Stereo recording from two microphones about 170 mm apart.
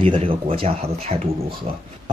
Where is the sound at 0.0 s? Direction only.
35° right (ahead or behind).